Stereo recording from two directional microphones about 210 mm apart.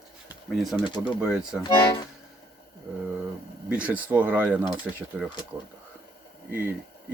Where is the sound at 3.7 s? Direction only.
5° right (ahead or behind).